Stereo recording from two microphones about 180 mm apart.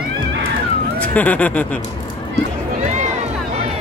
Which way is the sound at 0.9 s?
10° left (ahead or behind).